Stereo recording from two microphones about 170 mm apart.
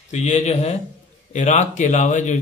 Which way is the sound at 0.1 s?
40° left (ahead or behind).